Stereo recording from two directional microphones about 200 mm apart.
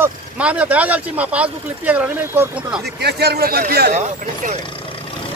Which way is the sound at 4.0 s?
40° right (ahead or behind).